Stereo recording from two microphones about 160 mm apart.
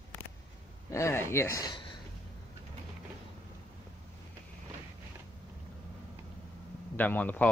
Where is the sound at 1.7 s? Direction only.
30° left (ahead or behind).